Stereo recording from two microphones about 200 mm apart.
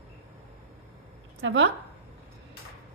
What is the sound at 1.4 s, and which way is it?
Speech, 65° right (ahead or behind).